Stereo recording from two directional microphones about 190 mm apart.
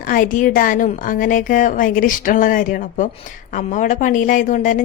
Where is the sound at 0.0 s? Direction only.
45° left (ahead or behind).